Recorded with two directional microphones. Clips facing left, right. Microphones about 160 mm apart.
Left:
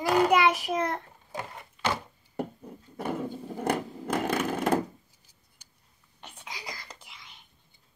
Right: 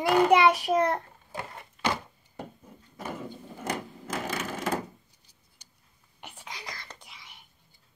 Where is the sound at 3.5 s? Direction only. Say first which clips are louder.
Left 5 dB; 55° left (ahead or behind).